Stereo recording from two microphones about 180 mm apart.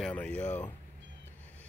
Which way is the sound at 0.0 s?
5° left (ahead or behind).